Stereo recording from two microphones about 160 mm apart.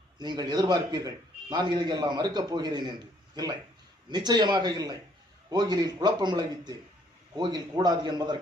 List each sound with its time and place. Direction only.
0.2 s a man's voice: 25° right (ahead or behind)